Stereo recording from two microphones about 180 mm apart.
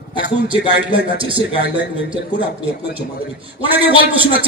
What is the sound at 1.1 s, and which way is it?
Speech, 30° right (ahead or behind).